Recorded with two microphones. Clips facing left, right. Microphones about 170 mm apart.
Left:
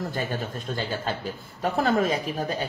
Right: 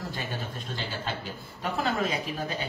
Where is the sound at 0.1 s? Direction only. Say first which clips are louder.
Left 6 dB; 45° left (ahead or behind).